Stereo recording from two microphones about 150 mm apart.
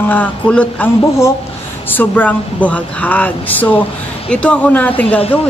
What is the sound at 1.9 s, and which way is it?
Speech, 10° left (ahead or behind).